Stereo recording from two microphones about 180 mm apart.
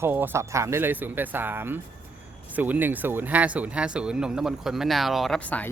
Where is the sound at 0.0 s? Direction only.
10° right (ahead or behind).